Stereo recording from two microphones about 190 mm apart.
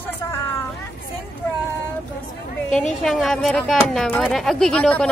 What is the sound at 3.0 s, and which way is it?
Speech, centre (ahead or behind).